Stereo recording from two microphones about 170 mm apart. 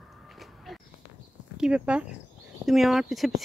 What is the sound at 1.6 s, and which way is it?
Speech, 5° right (ahead or behind).